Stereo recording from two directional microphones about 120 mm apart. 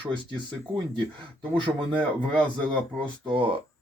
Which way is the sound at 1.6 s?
40° right (ahead or behind).